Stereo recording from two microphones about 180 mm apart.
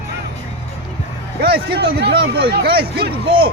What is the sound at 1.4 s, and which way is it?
Speech, 60° right (ahead or behind).